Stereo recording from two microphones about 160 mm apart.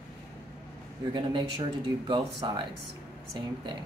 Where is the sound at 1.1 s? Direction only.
30° right (ahead or behind).